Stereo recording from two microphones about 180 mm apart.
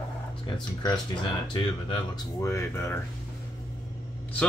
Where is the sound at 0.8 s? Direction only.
25° left (ahead or behind).